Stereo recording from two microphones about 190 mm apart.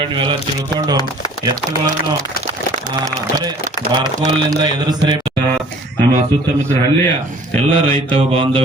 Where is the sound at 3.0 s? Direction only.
20° right (ahead or behind).